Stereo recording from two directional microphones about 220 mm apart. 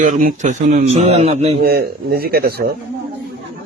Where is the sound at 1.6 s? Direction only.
45° right (ahead or behind).